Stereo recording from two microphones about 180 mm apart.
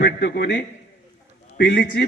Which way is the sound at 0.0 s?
65° left (ahead or behind).